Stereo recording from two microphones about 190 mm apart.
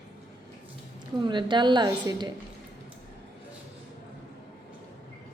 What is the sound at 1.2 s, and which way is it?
A woman's voice, 25° right (ahead or behind).